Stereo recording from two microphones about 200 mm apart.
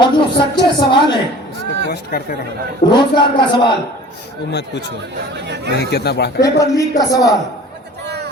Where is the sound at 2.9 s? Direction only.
20° left (ahead or behind).